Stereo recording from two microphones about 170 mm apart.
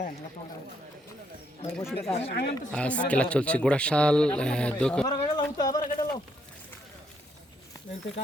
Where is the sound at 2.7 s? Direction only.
5° left (ahead or behind).